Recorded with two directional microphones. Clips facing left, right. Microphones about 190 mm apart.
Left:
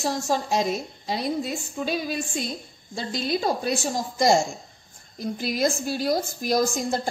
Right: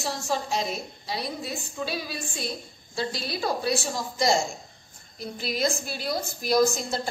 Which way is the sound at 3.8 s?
45° left (ahead or behind).